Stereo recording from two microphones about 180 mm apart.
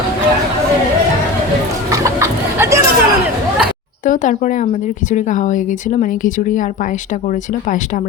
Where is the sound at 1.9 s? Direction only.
15° right (ahead or behind).